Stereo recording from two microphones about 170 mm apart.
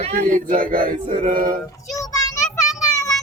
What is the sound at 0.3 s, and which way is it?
Mantra, 50° right (ahead or behind).